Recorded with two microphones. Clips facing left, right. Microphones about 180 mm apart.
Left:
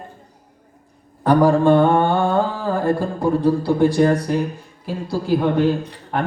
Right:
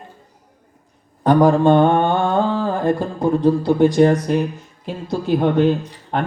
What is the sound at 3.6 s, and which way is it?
Speech, 20° right (ahead or behind).